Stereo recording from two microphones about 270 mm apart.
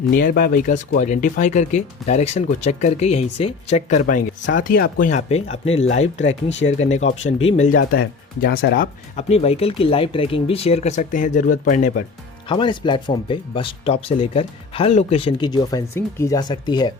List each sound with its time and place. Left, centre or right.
0.1 s speech: left
6.2 s speech: left
7.3 s speech: left
7.7 s speech: left
8.4 s speech: left
12.5 s speech: centre